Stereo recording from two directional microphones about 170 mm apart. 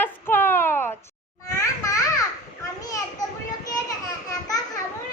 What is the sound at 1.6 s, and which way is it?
Children playing, 20° left (ahead or behind).